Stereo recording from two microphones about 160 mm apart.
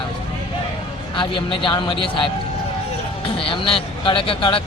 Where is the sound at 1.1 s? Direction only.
30° left (ahead or behind).